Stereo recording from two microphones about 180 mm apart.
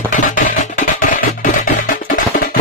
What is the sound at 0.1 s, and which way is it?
Music, 45° left (ahead or behind).